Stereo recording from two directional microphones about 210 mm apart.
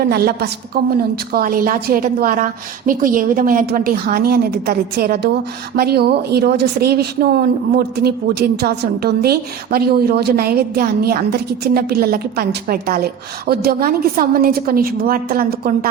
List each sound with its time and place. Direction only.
0.0 s a woman's voice: 50° right (ahead or behind)